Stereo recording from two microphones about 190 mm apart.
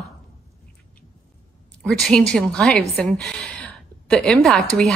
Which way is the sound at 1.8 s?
5° left (ahead or behind).